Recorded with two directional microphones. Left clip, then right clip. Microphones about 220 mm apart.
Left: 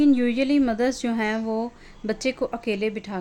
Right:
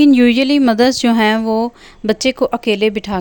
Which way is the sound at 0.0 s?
40° right (ahead or behind).